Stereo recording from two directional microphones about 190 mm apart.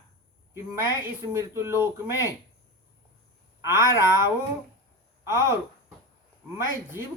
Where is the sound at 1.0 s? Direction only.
15° right (ahead or behind).